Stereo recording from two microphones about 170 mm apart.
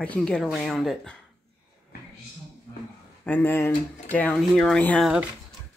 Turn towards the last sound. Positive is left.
turn(degrees=5)  # may be behind; listen again after turning